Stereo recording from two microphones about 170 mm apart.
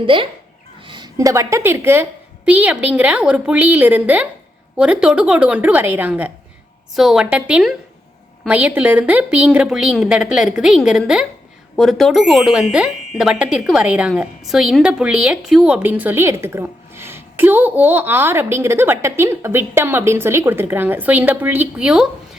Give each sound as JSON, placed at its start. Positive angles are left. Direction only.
{"t": 0.0, "sound": "a woman's voice", "side_deg": -30}